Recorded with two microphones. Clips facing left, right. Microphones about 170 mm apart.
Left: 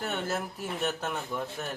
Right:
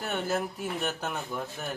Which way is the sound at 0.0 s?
Centre (ahead or behind).